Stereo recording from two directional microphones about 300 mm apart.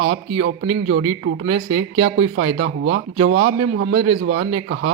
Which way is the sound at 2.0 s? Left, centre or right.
Right.